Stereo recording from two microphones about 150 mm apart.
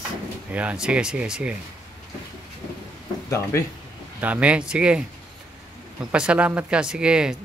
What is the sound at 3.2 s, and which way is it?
Speech, 20° left (ahead or behind).